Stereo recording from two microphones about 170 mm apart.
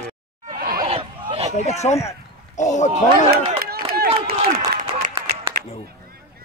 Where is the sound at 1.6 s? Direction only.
40° left (ahead or behind).